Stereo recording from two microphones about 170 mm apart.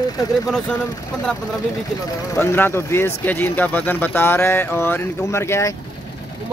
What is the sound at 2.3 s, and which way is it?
Speech, 10° left (ahead or behind).